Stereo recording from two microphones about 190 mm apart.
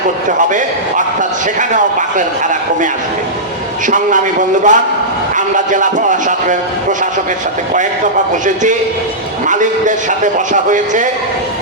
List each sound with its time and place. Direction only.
0.3 s speech: 40° right (ahead or behind)
3.8 s speech: 40° right (ahead or behind)
9.5 s speech: 40° right (ahead or behind)